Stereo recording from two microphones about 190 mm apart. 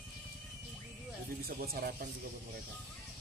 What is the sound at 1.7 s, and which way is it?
Speech, 50° right (ahead or behind).